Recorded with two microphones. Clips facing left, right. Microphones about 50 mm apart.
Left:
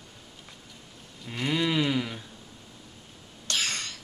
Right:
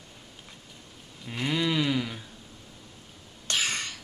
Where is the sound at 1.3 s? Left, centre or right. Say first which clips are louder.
Even; centre.